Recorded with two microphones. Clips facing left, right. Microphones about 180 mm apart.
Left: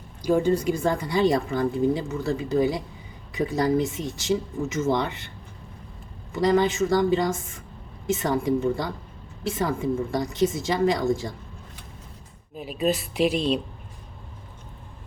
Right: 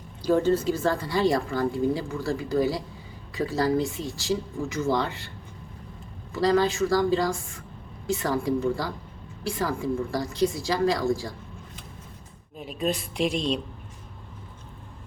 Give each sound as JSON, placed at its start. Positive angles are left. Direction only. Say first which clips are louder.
{"t": 0.2, "sound": "a woman's voice", "louder": "even", "side_deg": 15}
{"t": 6.3, "sound": "a woman's voice", "louder": "left 1 dB", "side_deg": 20}
{"t": 12.5, "sound": "a woman's voice", "louder": "left 3 dB", "side_deg": 5}